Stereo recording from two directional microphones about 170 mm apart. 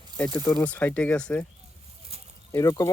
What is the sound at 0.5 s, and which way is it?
Speech, 10° left (ahead or behind).